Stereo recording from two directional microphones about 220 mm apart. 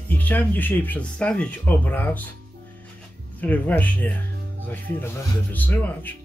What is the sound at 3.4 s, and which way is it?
Speech, 5° left (ahead or behind).